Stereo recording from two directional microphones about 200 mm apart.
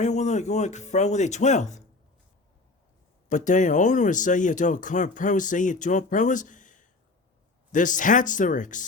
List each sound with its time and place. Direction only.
0.0 s speech: 35° left (ahead or behind)
3.2 s speech: 40° left (ahead or behind)